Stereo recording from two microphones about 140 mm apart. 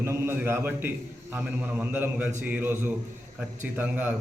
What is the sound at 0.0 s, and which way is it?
A man's voice, 15° right (ahead or behind).